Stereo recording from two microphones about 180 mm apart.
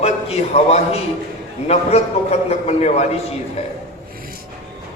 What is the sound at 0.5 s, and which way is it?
A man's voice, 35° left (ahead or behind).